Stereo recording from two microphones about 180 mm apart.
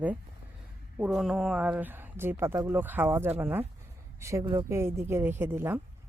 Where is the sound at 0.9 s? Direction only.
5° right (ahead or behind).